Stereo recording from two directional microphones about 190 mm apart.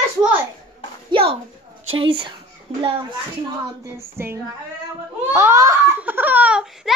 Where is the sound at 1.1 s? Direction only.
30° right (ahead or behind).